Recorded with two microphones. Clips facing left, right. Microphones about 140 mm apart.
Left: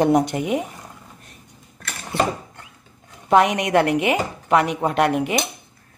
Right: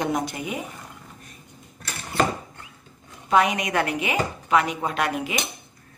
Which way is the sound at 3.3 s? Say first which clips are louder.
Left 5 dB; 70° left (ahead or behind).